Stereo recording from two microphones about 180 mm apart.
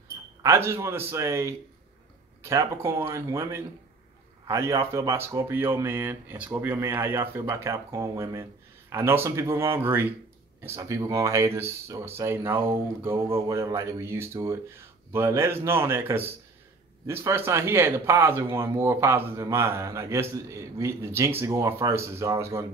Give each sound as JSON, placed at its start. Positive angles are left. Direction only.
{"t": 0.4, "sound": "speech", "side_deg": -15}